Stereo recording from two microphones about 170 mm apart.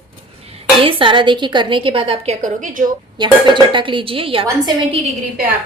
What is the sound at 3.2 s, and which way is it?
A woman's voice, 25° right (ahead or behind).